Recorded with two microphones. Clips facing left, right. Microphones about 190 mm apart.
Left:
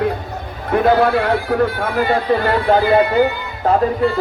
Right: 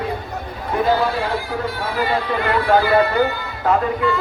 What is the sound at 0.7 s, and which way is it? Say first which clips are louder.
Speech: left 5 dB; 65° left (ahead or behind).